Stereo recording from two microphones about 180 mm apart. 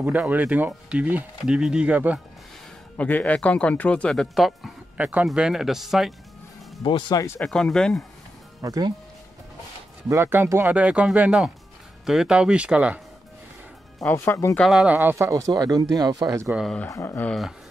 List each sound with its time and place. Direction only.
0.0 s speech: 10° right (ahead or behind)
3.0 s speech: 10° left (ahead or behind)
6.8 s speech: 25° left (ahead or behind)
7.3 s speech: 5° left (ahead or behind)
8.5 s speech: 20° right (ahead or behind)
10.0 s speech: 15° right (ahead or behind)
13.9 s speech: 15° left (ahead or behind)
14.6 s speech: 5° right (ahead or behind); by 16.4 s 20° right (ahead or behind)
16.4 s speech: centre (ahead or behind)